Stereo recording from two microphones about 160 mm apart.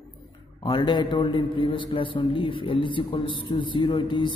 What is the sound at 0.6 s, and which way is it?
A man's voice, 30° left (ahead or behind).